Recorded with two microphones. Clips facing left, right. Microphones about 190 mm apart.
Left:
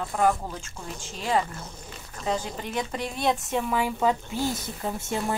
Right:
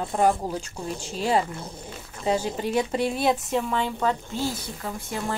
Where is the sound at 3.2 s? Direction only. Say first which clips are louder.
Right 2 dB; centre (ahead or behind).